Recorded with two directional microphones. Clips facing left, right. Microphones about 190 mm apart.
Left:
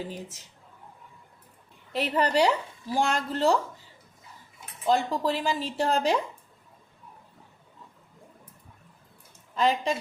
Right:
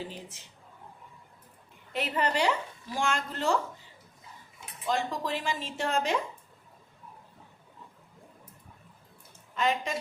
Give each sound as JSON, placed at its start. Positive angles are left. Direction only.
{"t": 0.1, "sound": "a woman's voice", "side_deg": 45}
{"t": 1.9, "sound": "speech", "side_deg": 35}
{"t": 4.9, "sound": "speech", "side_deg": 35}
{"t": 9.6, "sound": "speech", "side_deg": 35}